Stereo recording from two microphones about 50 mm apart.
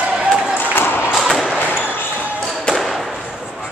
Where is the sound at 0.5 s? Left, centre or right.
Left.